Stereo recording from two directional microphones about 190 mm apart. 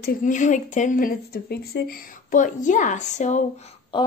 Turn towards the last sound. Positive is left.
turn(degrees=25)  # may be behind; listen again after turning